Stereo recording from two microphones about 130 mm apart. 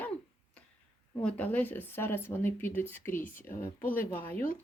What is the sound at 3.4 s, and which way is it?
Speech, 90° left.